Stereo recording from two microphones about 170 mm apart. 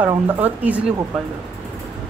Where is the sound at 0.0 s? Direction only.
10° right (ahead or behind).